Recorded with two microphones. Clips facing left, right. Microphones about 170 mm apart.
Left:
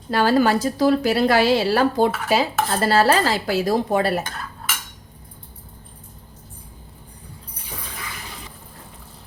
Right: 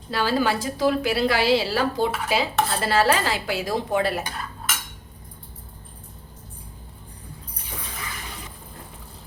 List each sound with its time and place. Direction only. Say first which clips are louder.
0.1 s a woman's voice: left 5 dB; 50° left (ahead or behind)